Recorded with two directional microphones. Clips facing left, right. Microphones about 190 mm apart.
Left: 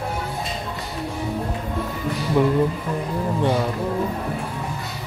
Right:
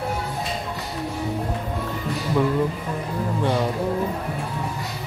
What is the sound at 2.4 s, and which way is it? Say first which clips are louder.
Speech: left 3 dB; 20° left (ahead or behind).